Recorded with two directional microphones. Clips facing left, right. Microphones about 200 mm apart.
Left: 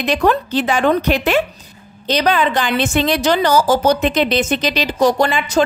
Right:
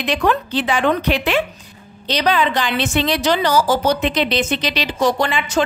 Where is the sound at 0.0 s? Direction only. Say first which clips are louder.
Left 3 dB; 40° left (ahead or behind).